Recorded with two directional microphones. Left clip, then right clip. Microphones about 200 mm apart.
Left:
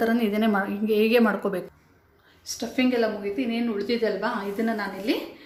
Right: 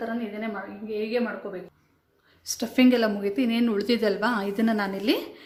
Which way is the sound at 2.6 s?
45° right (ahead or behind).